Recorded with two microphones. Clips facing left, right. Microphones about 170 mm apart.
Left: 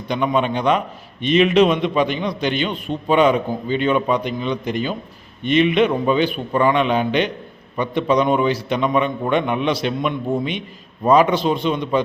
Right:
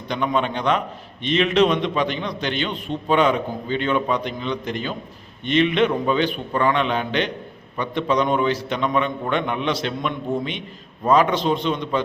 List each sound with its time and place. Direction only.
0.1 s a man's voice: 10° left (ahead or behind)